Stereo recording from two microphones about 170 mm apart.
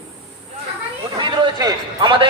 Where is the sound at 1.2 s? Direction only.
25° right (ahead or behind).